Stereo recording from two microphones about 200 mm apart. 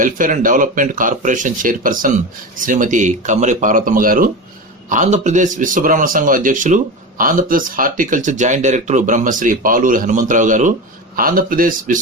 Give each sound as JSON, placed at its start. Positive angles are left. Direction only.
{"t": 0.0, "sound": "a man's voice", "side_deg": -40}